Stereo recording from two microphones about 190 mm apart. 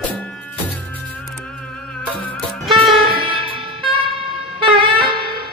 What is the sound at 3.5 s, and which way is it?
Wind instrument, 25° right (ahead or behind).